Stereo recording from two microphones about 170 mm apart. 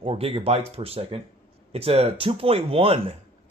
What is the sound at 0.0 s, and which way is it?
Speech, 35° right (ahead or behind).